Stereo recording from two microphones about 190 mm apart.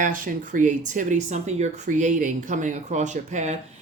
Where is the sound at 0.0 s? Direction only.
45° right (ahead or behind).